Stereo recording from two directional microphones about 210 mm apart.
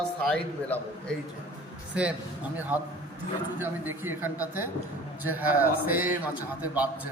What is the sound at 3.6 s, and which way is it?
A man's voice, 10° right (ahead or behind).